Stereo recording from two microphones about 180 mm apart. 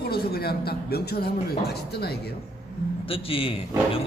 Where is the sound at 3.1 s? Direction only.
30° left (ahead or behind).